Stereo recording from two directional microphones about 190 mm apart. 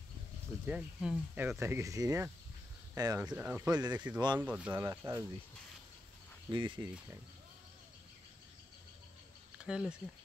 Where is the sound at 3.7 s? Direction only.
20° right (ahead or behind).